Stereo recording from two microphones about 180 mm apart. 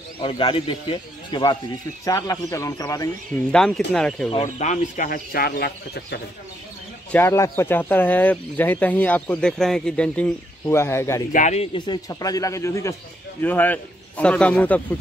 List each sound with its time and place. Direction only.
0.2 s a man's voice: 30° left (ahead or behind)
3.5 s speech: 5° left (ahead or behind)
4.4 s speech: 40° left (ahead or behind); by 6.1 s 65° left (ahead or behind)
7.1 s speech: 10° left (ahead or behind)
11.3 s a man's voice: 40° left (ahead or behind); by 14.8 s 10° left (ahead or behind)